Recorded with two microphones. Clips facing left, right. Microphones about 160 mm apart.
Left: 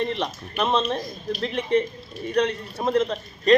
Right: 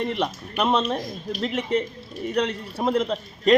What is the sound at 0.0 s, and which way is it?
Speech, 10° right (ahead or behind).